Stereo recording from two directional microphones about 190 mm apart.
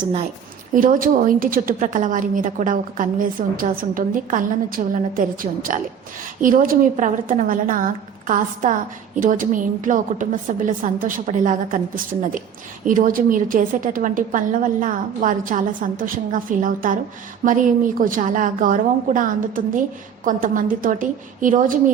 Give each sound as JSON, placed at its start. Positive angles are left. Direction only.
{"t": 0.0, "sound": "a woman's voice", "side_deg": -30}
{"t": 0.7, "sound": "a woman's voice", "side_deg": -45}
{"t": 9.2, "sound": "a woman's voice", "side_deg": -45}